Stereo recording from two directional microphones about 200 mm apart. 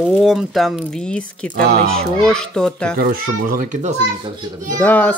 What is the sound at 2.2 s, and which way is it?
Speech, 5° left (ahead or behind).